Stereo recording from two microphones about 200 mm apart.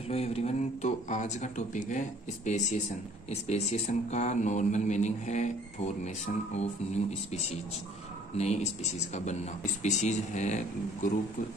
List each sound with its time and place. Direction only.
0.1 s speech: 30° left (ahead or behind)
8.4 s speech: 30° left (ahead or behind)